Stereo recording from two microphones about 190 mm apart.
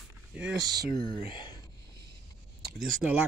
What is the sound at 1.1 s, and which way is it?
Speech, 25° left (ahead or behind).